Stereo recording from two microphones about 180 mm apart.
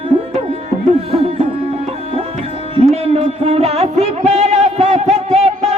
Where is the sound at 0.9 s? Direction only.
35° right (ahead or behind).